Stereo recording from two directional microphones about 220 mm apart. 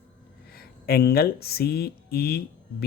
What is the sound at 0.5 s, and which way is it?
Speech, 45° left (ahead or behind).